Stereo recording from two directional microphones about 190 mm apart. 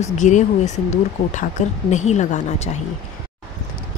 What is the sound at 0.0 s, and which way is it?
A woman's voice, 40° left (ahead or behind).